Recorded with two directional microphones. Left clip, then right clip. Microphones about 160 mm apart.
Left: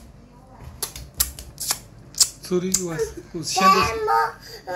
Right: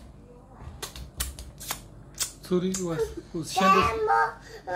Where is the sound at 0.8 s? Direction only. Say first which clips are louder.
Left 8 dB; centre (ahead or behind).